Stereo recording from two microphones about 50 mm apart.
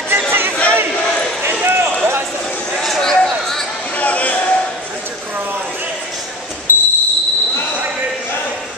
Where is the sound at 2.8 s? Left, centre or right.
Centre.